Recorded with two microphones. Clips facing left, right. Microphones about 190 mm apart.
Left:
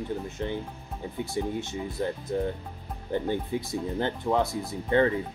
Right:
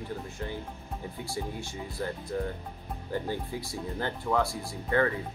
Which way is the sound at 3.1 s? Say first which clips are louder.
Left 5 dB; 20° left (ahead or behind).